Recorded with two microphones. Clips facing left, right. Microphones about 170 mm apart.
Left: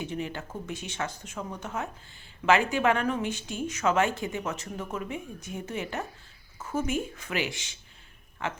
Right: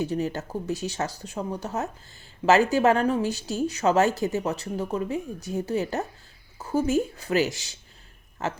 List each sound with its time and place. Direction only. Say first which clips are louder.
0.0 s speech: right 7 dB; 40° right (ahead or behind)